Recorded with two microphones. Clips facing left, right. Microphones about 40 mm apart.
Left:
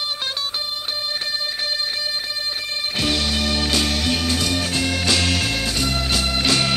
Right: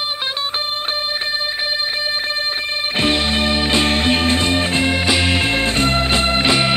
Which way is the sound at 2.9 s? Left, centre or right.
Right.